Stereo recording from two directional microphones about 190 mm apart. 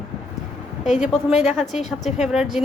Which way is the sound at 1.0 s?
5° right (ahead or behind).